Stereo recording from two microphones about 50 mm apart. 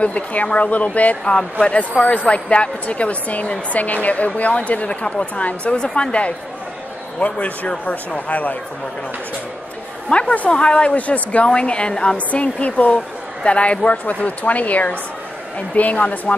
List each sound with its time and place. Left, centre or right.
0.0 s a woman's voice: left
10.0 s a woman's voice: left